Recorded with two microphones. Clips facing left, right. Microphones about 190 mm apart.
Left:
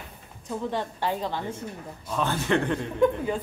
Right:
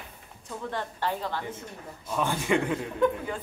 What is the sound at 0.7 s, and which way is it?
Speech, 15° left (ahead or behind).